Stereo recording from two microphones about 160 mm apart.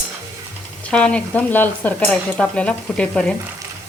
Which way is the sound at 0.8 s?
5° left (ahead or behind).